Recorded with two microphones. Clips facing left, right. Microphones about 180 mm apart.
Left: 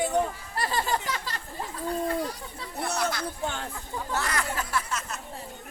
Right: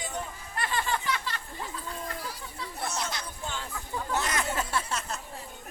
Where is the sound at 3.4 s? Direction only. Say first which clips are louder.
Left 4 dB; 55° left (ahead or behind).